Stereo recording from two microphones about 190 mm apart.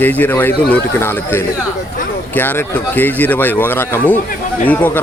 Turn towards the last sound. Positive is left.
turn(degrees=10)  # may be behind; listen again after turning